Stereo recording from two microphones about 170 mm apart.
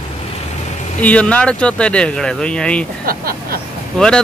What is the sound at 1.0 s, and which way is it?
Speech, 5° left (ahead or behind).